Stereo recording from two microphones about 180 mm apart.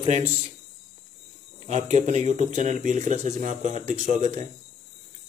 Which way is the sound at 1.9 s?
40° right (ahead or behind).